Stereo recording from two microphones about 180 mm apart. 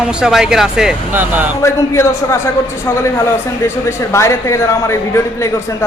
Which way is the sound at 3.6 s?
15° left (ahead or behind).